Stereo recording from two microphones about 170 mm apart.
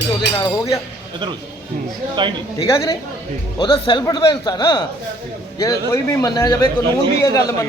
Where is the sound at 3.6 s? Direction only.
30° left (ahead or behind).